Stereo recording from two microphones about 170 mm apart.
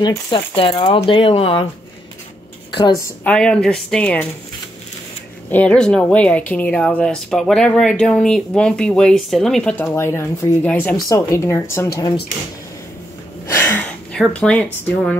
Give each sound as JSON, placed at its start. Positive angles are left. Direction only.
{"t": 0.0, "sound": "speech", "side_deg": 30}
{"t": 2.7, "sound": "a woman's voice", "side_deg": 20}
{"t": 3.3, "sound": "speech", "side_deg": 5}
{"t": 5.5, "sound": "speech", "side_deg": 10}
{"t": 9.8, "sound": "speech", "side_deg": 15}
{"t": 13.5, "sound": "a sound", "side_deg": 15}
{"t": 14.1, "sound": "speech", "side_deg": 5}